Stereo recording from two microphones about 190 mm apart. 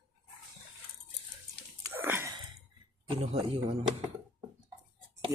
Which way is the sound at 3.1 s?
30° right (ahead or behind).